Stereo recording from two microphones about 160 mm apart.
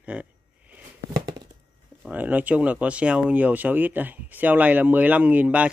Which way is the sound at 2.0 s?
10° right (ahead or behind).